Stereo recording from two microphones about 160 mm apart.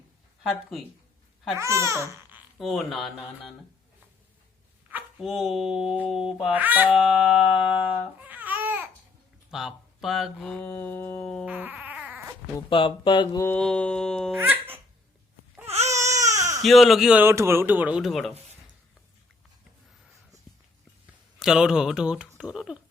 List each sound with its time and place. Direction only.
1.5 s speech: 20° right (ahead or behind)
2.6 s music: centre (ahead or behind)
5.2 s music: centre (ahead or behind)
7.8 s babbling: 10° right (ahead or behind)
9.5 s speech: centre (ahead or behind)
11.4 s baby cry: 10° right (ahead or behind)
12.7 s speech: 30° left (ahead or behind)
13.4 s music: 10° left (ahead or behind)
14.4 s babbling: 10° right (ahead or behind)
16.3 s baby cry: 20° right (ahead or behind)
16.6 s music: centre (ahead or behind)
17.2 s speech: 15° right (ahead or behind); by 18.3 s centre (ahead or behind)
21.3 s music: 5° right (ahead or behind)
22.4 s speech: 5° right (ahead or behind)